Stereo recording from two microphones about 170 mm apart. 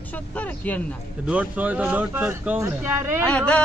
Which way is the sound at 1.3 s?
10° right (ahead or behind).